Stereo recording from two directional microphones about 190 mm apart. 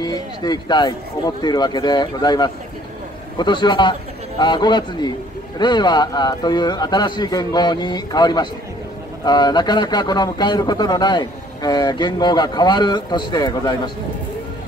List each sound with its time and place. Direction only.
0.0 s a man's voice: 20° left (ahead or behind)